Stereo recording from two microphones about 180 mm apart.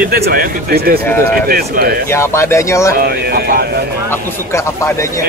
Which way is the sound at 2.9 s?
60° right (ahead or behind).